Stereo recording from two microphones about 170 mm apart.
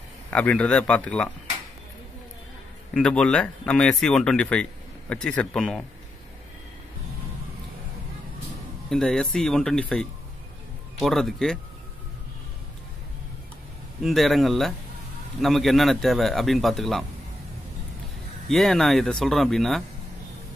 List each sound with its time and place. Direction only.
0.3 s speech: 5° left (ahead or behind)
2.9 s speech: 5° left (ahead or behind)
8.9 s speech: 5° left (ahead or behind)
14.0 s speech: centre (ahead or behind)
18.5 s speech: centre (ahead or behind)